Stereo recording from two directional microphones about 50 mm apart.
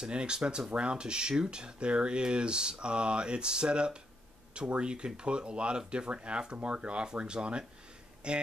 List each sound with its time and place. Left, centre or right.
0.0 s speech: centre